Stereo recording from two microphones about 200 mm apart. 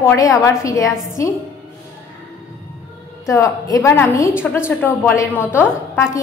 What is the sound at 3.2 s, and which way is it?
A woman's voice, 15° left (ahead or behind).